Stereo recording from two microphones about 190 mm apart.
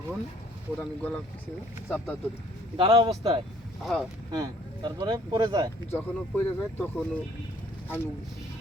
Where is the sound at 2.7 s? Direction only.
25° right (ahead or behind).